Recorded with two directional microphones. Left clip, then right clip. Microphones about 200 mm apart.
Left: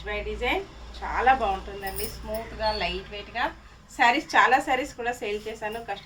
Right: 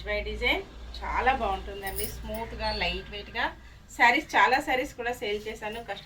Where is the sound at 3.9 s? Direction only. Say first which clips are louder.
Left 1 dB; 15° left (ahead or behind).